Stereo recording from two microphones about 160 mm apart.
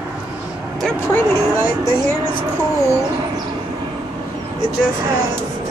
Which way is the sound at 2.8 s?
25° right (ahead or behind).